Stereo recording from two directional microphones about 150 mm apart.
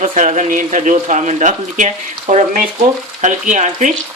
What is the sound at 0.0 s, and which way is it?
Speech, 55° right (ahead or behind).